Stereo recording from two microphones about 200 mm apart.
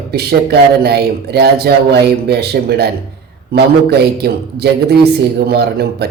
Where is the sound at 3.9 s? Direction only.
55° right (ahead or behind).